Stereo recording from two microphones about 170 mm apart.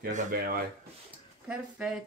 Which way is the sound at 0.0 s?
55° right (ahead or behind).